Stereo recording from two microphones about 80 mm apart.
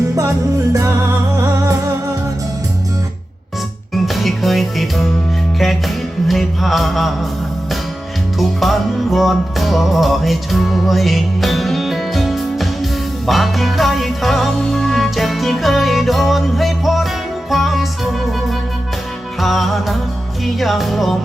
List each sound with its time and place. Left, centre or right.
0.7 s music: right
3.9 s music: centre
6.2 s music: centre
8.4 s music: centre
19.4 s music: centre